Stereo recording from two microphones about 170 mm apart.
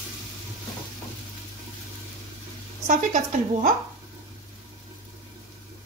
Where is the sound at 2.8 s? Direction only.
45° right (ahead or behind).